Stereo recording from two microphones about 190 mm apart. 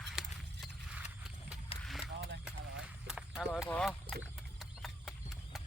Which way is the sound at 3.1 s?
5° right (ahead or behind).